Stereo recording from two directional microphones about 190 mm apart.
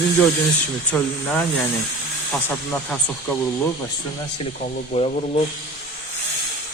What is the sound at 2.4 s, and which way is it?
Speech, 5° left (ahead or behind).